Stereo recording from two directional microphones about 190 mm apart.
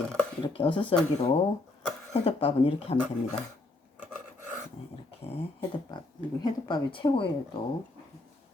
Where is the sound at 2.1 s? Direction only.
30° left (ahead or behind).